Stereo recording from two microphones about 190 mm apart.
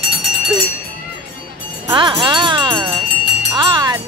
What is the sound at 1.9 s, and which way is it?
Speech, 25° right (ahead or behind).